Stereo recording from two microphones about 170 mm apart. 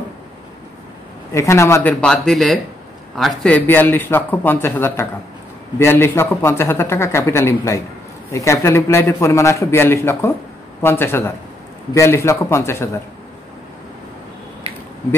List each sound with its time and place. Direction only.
1.3 s speech: 15° left (ahead or behind)